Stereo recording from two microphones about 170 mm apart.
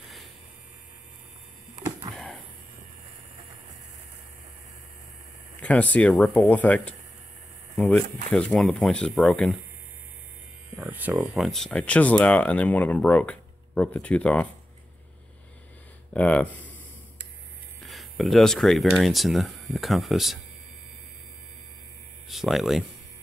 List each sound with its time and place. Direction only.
2.1 s a sound: centre (ahead or behind)
5.6 s speech: 10° left (ahead or behind)
10.8 s a sound: 10° right (ahead or behind)
11.3 s speech: centre (ahead or behind)
16.1 s speech: 10° left (ahead or behind)
17.8 s speech: centre (ahead or behind)
22.3 s speech: centre (ahead or behind)